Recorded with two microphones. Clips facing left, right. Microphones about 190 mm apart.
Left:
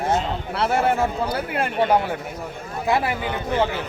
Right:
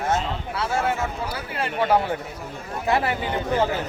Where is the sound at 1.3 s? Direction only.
50° left (ahead or behind).